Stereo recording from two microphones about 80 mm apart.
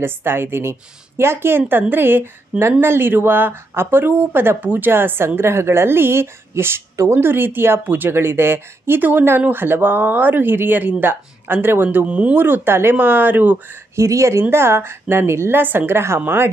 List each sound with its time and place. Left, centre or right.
0.0 s speech: right
13.9 s a woman's voice: right